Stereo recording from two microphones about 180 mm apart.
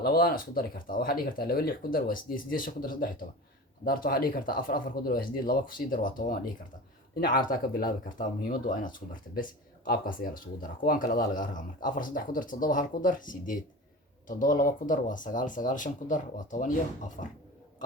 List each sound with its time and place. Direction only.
0.0 s speech: 55° left (ahead or behind)